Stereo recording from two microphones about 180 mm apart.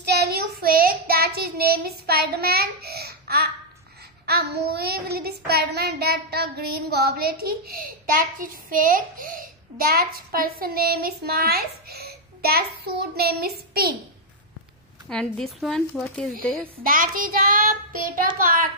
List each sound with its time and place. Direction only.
0.0 s child singing: 65° right (ahead or behind); by 9.4 s 50° right (ahead or behind)
9.8 s a child's voice: 55° right (ahead or behind)
13.1 s child singing: 60° right (ahead or behind)
15.0 s a woman's voice: 5° left (ahead or behind)
16.8 s child singing: 50° right (ahead or behind)